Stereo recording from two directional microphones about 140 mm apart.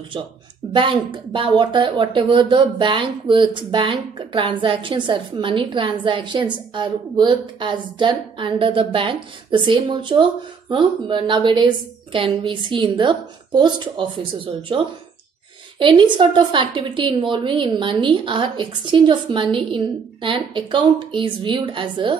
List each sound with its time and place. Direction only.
0.7 s a woman's voice: 35° right (ahead or behind)
15.8 s a woman's voice: 35° right (ahead or behind)